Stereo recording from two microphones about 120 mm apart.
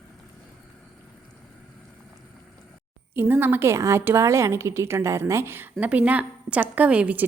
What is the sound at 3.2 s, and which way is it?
A woman's voice, 15° right (ahead or behind).